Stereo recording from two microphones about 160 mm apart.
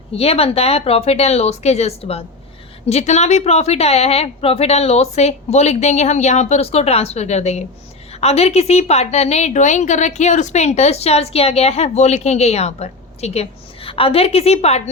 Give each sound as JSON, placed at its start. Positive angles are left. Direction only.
{"t": 0.1, "sound": "a woman's voice", "side_deg": 40}